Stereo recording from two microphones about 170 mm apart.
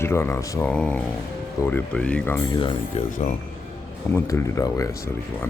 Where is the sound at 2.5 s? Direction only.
30° left (ahead or behind).